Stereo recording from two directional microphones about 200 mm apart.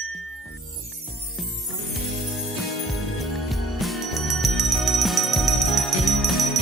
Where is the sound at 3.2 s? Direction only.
Centre (ahead or behind).